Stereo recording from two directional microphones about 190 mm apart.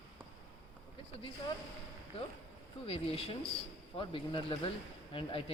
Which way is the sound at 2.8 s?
30° left (ahead or behind).